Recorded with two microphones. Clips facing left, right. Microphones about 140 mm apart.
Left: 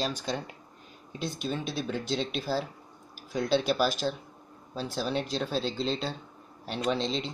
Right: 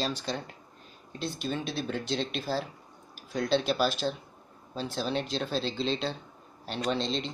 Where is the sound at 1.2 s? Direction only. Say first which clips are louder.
Even; 5° left (ahead or behind).